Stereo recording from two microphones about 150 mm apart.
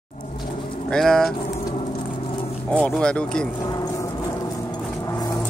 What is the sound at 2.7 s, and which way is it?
Speech, 5° left (ahead or behind).